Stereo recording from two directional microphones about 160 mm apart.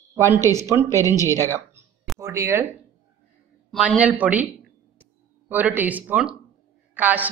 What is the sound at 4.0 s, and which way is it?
A woman's voice, 10° right (ahead or behind).